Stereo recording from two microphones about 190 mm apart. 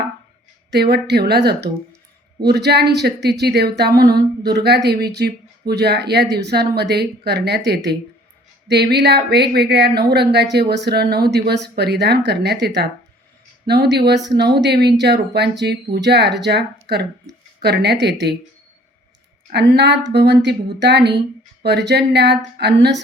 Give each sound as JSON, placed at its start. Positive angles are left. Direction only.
{"t": 0.7, "sound": "speech", "side_deg": -55}
{"t": 19.5, "sound": "speech", "side_deg": -60}